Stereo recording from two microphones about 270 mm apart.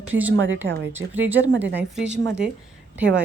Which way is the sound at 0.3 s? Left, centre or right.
Right.